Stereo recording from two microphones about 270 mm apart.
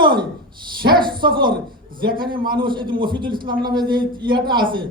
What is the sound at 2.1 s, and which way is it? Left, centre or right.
Speech, right.